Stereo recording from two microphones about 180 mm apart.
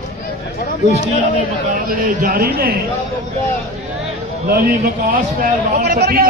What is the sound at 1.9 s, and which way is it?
Speech, 55° right (ahead or behind).